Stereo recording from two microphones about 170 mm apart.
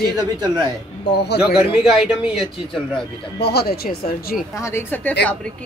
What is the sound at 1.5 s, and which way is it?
A man's voice, centre (ahead or behind).